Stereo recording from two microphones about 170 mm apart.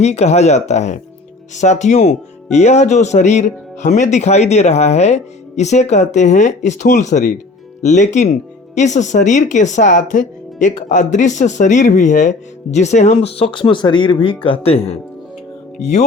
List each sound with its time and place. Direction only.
0.0 s speech: 40° left (ahead or behind)